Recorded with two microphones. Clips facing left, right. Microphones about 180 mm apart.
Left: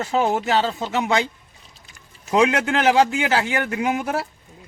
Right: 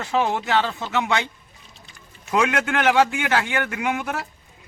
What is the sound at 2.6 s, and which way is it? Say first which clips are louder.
A man's voice: left 2 dB; 35° left (ahead or behind).